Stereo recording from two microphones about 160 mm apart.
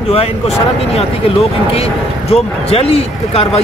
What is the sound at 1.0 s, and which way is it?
Speech, 40° left (ahead or behind).